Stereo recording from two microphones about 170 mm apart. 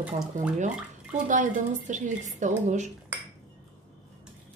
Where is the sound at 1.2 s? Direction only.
50° right (ahead or behind).